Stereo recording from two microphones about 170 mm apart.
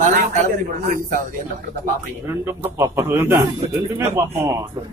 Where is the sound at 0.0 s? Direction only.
50° right (ahead or behind).